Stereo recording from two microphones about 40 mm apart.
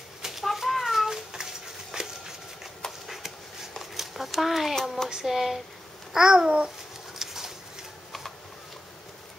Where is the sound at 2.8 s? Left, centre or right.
Centre.